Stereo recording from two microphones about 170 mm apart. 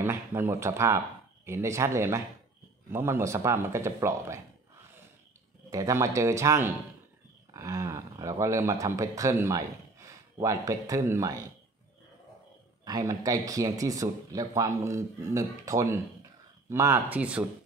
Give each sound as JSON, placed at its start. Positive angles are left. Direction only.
{"t": 0.0, "sound": "speech", "side_deg": -15}
{"t": 5.7, "sound": "speech", "side_deg": -20}
{"t": 12.8, "sound": "speech", "side_deg": -20}